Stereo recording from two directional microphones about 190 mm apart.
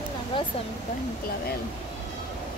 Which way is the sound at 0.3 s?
25° left (ahead or behind).